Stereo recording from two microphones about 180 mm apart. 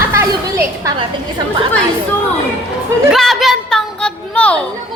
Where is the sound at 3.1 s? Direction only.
Centre (ahead or behind).